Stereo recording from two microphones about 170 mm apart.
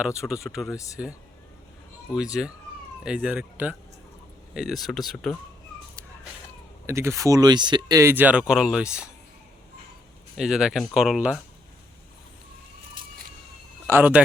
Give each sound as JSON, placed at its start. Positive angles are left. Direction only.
{"t": 0.2, "sound": "speech", "side_deg": -5}
{"t": 0.7, "sound": "speech", "side_deg": 20}
{"t": 2.4, "sound": "speech", "side_deg": 0}
{"t": 6.8, "sound": "speech", "side_deg": -15}
{"t": 10.3, "sound": "speech", "side_deg": -5}
{"t": 13.8, "sound": "speech", "side_deg": -10}